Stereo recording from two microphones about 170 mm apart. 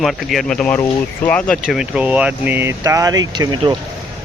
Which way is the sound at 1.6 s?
5° right (ahead or behind).